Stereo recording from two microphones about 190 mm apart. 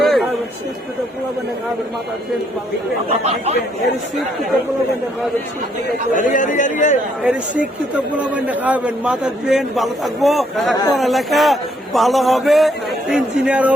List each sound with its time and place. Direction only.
0.0 s a sound: centre (ahead or behind)
3.1 s speech: 35° right (ahead or behind)
6.1 s a man's voice: 45° left (ahead or behind)
7.3 s a man's voice: 5° right (ahead or behind)